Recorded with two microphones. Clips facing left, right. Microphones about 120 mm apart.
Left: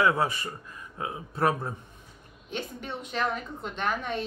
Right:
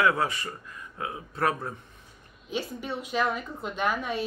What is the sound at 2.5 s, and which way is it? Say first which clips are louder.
A woman's voice: right 3 dB; 5° right (ahead or behind).